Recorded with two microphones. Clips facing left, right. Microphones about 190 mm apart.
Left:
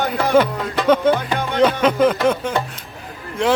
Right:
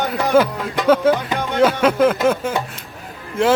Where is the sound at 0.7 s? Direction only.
10° right (ahead or behind).